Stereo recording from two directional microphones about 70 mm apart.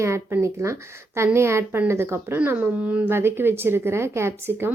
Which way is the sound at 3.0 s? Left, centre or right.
Right.